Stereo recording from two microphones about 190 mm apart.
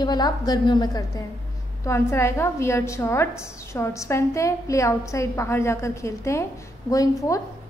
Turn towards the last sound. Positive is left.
turn(degrees=15)  # may be behind; listen again after turning